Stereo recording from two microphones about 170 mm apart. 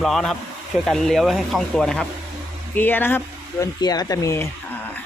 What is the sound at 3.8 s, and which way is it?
Speech, 25° left (ahead or behind).